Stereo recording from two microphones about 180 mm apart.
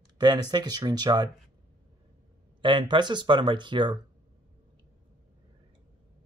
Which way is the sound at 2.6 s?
25° right (ahead or behind).